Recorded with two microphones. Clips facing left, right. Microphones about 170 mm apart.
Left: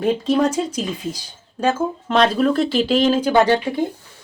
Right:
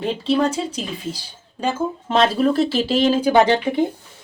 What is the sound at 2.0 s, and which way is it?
Speech, 5° right (ahead or behind).